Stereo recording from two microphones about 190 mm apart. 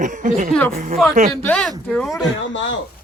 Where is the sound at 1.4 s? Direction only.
5° left (ahead or behind).